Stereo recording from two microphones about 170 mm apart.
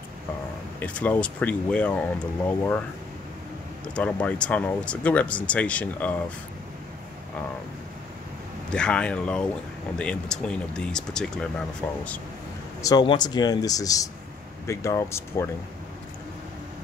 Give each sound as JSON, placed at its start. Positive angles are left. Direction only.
{"t": 0.7, "sound": "speech", "side_deg": 10}
{"t": 3.9, "sound": "speech", "side_deg": 10}
{"t": 8.7, "sound": "speech", "side_deg": 5}
{"t": 12.8, "sound": "speech", "side_deg": 25}